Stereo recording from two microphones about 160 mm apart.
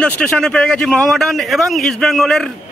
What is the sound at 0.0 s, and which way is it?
A man's voice, 5° left (ahead or behind).